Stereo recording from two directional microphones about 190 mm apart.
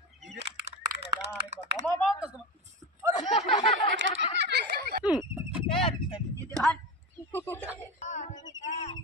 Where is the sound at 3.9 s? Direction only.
70° right (ahead or behind).